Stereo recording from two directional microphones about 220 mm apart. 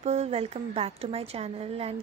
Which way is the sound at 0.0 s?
30° right (ahead or behind).